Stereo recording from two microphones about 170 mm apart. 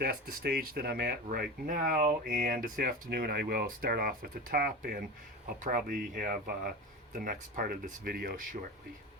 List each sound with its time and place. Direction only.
0.0 s speech: 60° right (ahead or behind)